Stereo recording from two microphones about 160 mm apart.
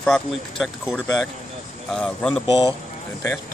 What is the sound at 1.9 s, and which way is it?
Speech, 5° left (ahead or behind).